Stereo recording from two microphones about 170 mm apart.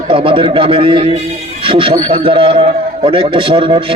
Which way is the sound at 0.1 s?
30° right (ahead or behind).